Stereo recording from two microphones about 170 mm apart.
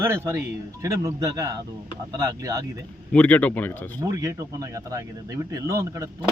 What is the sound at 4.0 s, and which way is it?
A man's voice, 20° right (ahead or behind).